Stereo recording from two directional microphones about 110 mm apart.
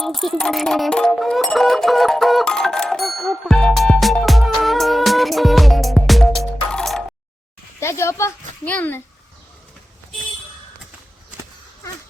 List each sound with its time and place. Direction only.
0.0 s music: centre (ahead or behind)
7.8 s speech: 25° left (ahead or behind)
8.6 s speech: 15° left (ahead or behind)